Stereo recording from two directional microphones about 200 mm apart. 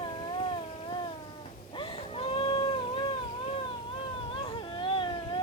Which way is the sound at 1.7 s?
25° left (ahead or behind).